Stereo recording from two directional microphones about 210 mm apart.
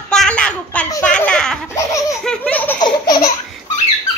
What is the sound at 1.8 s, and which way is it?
Laughter, 15° left (ahead or behind).